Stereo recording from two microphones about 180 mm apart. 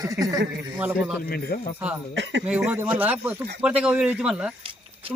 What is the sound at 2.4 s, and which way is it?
A man's voice, 5° right (ahead or behind).